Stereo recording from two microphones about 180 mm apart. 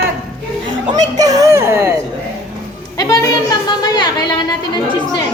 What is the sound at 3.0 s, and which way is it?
A woman's voice, 20° left (ahead or behind).